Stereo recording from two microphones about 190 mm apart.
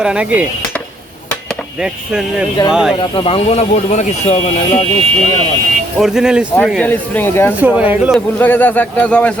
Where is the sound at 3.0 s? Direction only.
30° left (ahead or behind).